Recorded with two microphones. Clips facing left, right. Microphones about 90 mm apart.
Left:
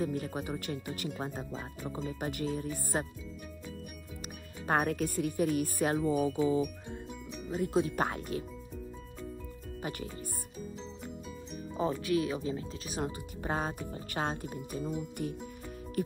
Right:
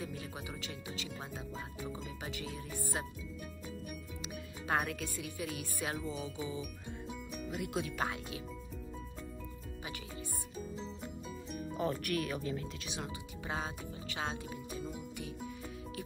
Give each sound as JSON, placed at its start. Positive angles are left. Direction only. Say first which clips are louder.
{"t": 0.0, "sound": "speech", "louder": "left 9 dB", "side_deg": 45}
{"t": 1.2, "sound": "speech", "louder": "left 5 dB", "side_deg": 40}
{"t": 4.6, "sound": "speech", "louder": "left 6 dB", "side_deg": 45}
{"t": 7.4, "sound": "speech", "louder": "left 8 dB", "side_deg": 35}
{"t": 11.7, "sound": "speech", "louder": "left 5 dB", "side_deg": 25}
{"t": 12.8, "sound": "speech", "louder": "left 6 dB", "side_deg": 45}